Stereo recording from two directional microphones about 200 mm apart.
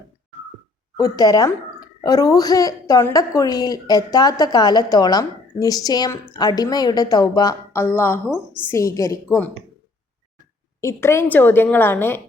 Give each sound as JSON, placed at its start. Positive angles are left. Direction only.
{"t": 1.0, "sound": "a woman's voice", "side_deg": 20}
{"t": 10.8, "sound": "a woman's voice", "side_deg": 15}